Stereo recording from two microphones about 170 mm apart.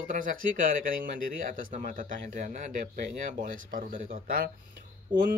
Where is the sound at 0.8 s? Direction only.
55° right (ahead or behind).